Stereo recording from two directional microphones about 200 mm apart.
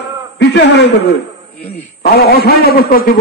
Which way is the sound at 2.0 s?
50° left (ahead or behind).